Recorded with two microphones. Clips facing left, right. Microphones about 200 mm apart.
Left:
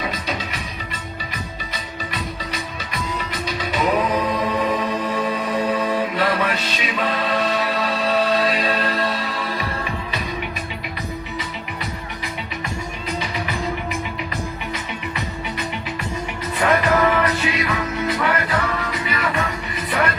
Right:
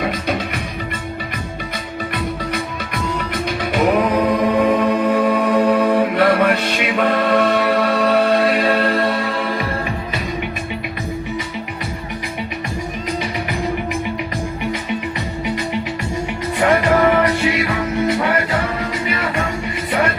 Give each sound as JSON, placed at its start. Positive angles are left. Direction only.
{"t": 0.0, "sound": "music", "side_deg": -55}
{"t": 2.1, "sound": "music", "side_deg": -55}
{"t": 3.6, "sound": "a capella", "side_deg": -55}
{"t": 16.6, "sound": "music", "side_deg": -30}